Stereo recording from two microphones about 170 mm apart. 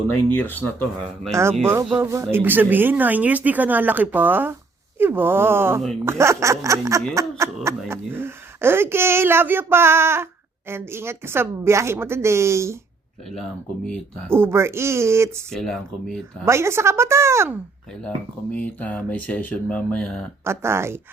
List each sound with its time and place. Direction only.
0.3 s speech: 10° left (ahead or behind)
1.9 s speech: 15° right (ahead or behind)
14.3 s speech: 15° right (ahead or behind)
15.5 s speech: centre (ahead or behind)
16.5 s speech: 15° right (ahead or behind)
18.5 s speech: 10° left (ahead or behind)
20.4 s speech: 15° right (ahead or behind)